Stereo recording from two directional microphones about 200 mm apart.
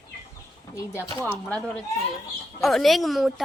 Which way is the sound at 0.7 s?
15° left (ahead or behind).